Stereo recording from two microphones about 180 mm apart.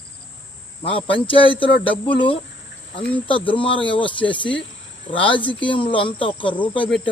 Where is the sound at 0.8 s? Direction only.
30° left (ahead or behind).